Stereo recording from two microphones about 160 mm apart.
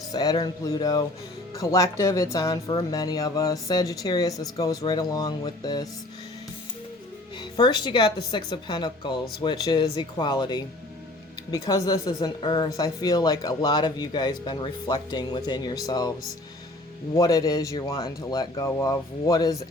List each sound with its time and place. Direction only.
0.1 s speech: 25° left (ahead or behind)
7.5 s speech: 25° left (ahead or behind)
17.2 s speech: 20° left (ahead or behind)